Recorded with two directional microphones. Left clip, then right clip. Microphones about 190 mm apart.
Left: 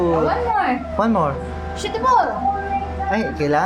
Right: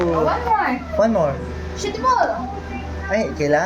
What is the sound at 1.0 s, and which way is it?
Speech, 10° left (ahead or behind).